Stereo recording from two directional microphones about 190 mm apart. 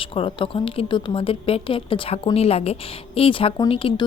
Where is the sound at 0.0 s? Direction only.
30° left (ahead or behind).